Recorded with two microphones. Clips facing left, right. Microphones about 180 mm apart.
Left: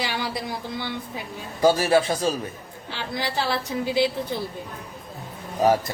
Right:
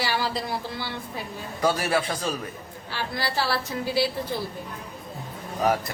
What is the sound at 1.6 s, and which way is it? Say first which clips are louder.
A woman's voice: left 5 dB; 25° left (ahead or behind).